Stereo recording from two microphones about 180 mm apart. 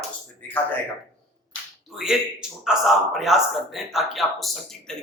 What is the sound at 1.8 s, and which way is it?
A man's voice, centre (ahead or behind).